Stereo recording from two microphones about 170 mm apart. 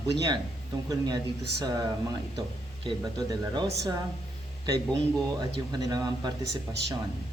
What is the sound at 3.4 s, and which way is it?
Speech, 20° right (ahead or behind).